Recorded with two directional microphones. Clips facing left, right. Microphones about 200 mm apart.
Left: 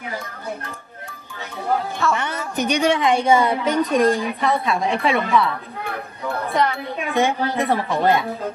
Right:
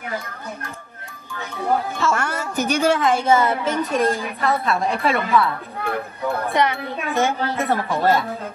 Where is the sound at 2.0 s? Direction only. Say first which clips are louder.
Even; centre (ahead or behind).